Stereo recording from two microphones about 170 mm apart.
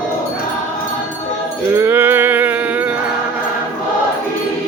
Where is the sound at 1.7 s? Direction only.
10° right (ahead or behind).